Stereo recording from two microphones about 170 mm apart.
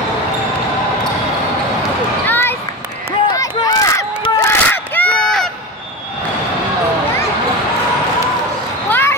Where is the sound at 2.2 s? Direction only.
10° left (ahead or behind).